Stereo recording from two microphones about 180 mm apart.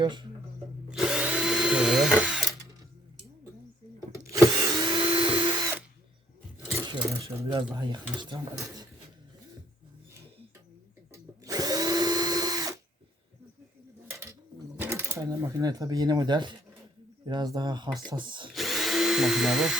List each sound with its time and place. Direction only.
0.0 s speech: 25° right (ahead or behind)
0.9 s drill: 5° right (ahead or behind)
4.1 s a sound: 15° right (ahead or behind)
6.7 s speech: 20° right (ahead or behind)
11.1 s drill: 20° right (ahead or behind)
14.8 s speech: 15° right (ahead or behind)
18.5 s drill: centre (ahead or behind)